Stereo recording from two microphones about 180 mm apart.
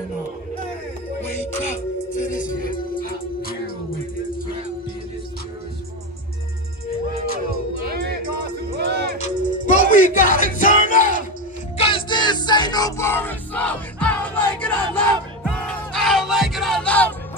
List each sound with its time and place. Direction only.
2.2 s music: 50° left (ahead or behind)
7.8 s music: 55° right (ahead or behind)
9.2 s music: 45° left (ahead or behind)
11.7 s music: 30° left (ahead or behind); by 17.1 s 5° left (ahead or behind)